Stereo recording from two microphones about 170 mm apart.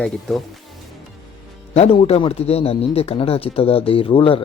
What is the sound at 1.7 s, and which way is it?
A man's voice, 35° left (ahead or behind).